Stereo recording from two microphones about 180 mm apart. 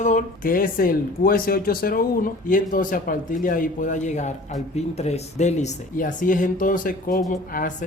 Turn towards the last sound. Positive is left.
turn(degrees=45)  # may be behind; listen again after turning